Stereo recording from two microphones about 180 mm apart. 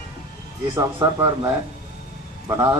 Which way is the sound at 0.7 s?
20° right (ahead or behind).